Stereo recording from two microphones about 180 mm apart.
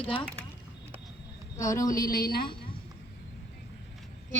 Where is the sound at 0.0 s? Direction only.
30° left (ahead or behind).